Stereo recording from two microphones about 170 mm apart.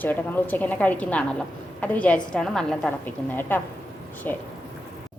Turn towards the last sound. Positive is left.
turn(degrees=10)  # may be behind; listen again after turning